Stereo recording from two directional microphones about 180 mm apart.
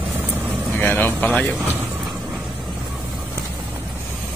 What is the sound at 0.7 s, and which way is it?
Speech, 10° left (ahead or behind).